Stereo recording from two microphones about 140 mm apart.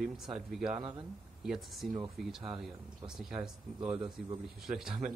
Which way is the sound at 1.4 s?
Centre (ahead or behind).